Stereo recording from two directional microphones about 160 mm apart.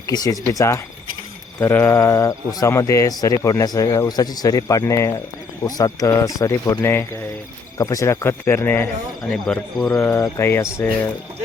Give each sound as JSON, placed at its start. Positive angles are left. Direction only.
{"t": 0.1, "sound": "speech", "side_deg": 25}
{"t": 9.3, "sound": "speech", "side_deg": 5}
{"t": 9.9, "sound": "speech", "side_deg": 15}